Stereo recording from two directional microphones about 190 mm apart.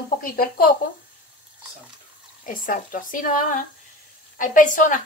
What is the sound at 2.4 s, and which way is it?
A woman's voice, 45° left (ahead or behind).